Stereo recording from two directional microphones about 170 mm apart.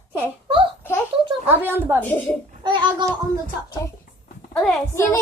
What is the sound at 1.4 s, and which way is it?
Speech, 10° right (ahead or behind).